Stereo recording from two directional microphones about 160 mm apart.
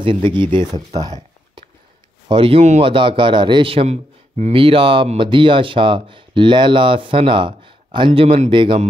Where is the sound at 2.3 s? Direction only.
35° right (ahead or behind).